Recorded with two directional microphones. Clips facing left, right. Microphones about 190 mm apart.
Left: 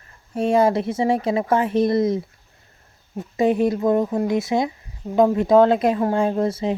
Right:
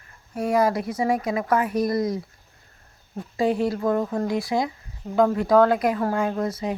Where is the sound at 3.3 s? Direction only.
20° left (ahead or behind).